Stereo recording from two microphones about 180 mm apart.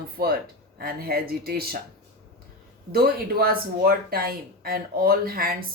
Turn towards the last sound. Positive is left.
turn(degrees=-55)  # may be behind; listen again after turning